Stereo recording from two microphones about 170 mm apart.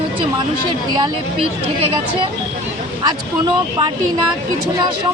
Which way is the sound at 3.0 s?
25° right (ahead or behind).